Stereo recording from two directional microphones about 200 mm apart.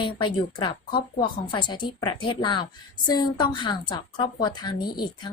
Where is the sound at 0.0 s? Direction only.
25° left (ahead or behind).